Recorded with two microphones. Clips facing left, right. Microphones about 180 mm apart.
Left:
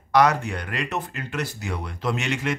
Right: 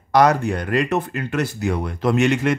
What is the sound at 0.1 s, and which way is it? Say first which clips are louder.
Speech: right 4 dB; 40° right (ahead or behind).